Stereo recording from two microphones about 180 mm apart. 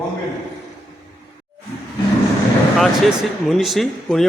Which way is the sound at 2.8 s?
Centre (ahead or behind).